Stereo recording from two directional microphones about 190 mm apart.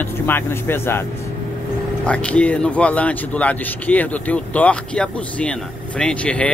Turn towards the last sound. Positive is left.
turn(degrees=5)  # may be behind; listen again after turning